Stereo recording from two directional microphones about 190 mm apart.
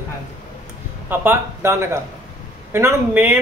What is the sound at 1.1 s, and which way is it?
A man's voice, 10° right (ahead or behind).